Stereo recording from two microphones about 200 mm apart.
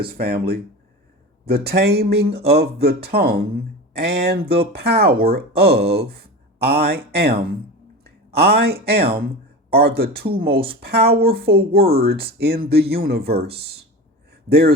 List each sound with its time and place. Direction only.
0.0 s speech: 50° right (ahead or behind)
8.4 s speech: 55° right (ahead or behind)